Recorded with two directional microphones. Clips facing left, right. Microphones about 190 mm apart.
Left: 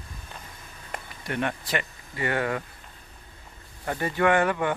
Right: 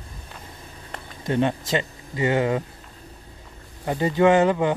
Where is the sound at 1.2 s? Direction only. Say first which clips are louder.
Right 7 dB; 25° right (ahead or behind).